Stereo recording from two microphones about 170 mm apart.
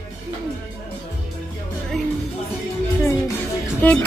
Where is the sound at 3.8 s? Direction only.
10° left (ahead or behind).